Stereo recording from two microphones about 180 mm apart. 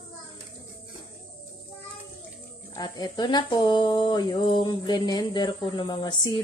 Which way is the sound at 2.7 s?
25° left (ahead or behind).